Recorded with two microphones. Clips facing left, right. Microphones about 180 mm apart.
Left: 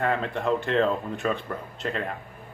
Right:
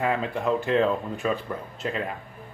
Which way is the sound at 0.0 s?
5° right (ahead or behind).